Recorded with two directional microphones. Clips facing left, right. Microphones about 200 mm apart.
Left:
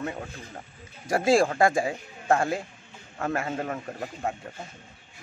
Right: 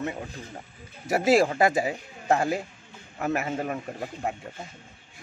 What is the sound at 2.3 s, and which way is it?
A man's voice, 10° right (ahead or behind).